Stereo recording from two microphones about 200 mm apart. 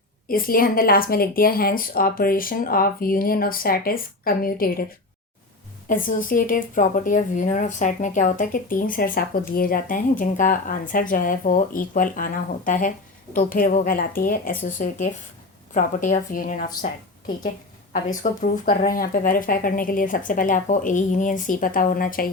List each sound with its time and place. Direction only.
0.3 s speech: 45° left (ahead or behind)
5.9 s speech: 45° left (ahead or behind)
17.9 s speech: 40° left (ahead or behind)